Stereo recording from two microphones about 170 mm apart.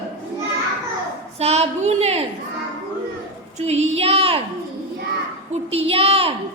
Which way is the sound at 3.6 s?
40° right (ahead or behind).